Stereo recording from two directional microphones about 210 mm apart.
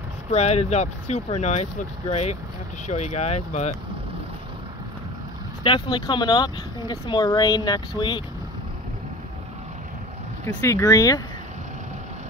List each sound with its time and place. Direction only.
0.3 s speech: 30° left (ahead or behind)
5.6 s speech: 25° left (ahead or behind)
10.4 s speech: 15° left (ahead or behind)